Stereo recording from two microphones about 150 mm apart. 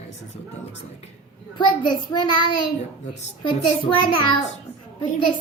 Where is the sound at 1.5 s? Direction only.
30° left (ahead or behind).